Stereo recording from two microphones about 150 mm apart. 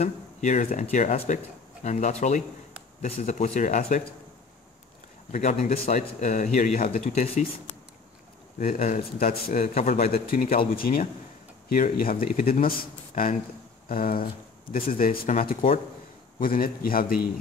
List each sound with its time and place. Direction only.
0.0 s speech: 55° left (ahead or behind)
0.9 s a man's voice: 45° left (ahead or behind)
5.3 s a man's voice: 55° left (ahead or behind)
8.5 s a man's voice: 50° left (ahead or behind)
9.2 s a man's voice: 65° left (ahead or behind); by 10.1 s 45° left (ahead or behind)
10.7 s speech: 75° left (ahead or behind)
16.3 s speech: 70° left (ahead or behind)